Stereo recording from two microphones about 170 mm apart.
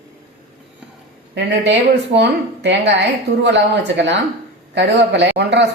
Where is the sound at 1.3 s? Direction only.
85° right.